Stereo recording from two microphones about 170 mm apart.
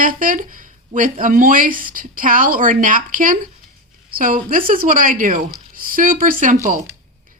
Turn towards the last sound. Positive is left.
turn(degrees=-50)  # may be behind; listen again after turning